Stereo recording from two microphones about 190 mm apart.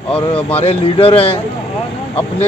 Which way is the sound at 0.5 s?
30° left (ahead or behind).